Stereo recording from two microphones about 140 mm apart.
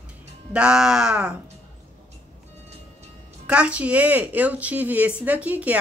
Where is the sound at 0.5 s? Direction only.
5° right (ahead or behind).